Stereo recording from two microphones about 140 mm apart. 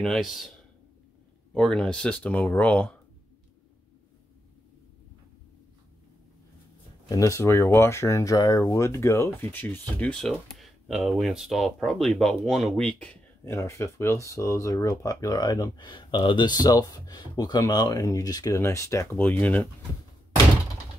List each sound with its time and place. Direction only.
0.0 s speech: centre (ahead or behind)
7.1 s speech: 20° left (ahead or behind); by 13.2 s 5° left (ahead or behind)
13.4 s speech: 20° left (ahead or behind)